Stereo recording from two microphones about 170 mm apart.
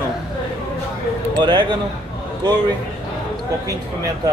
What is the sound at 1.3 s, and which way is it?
Speech, 25° right (ahead or behind).